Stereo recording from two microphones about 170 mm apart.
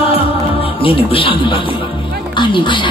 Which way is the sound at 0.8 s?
30° left (ahead or behind).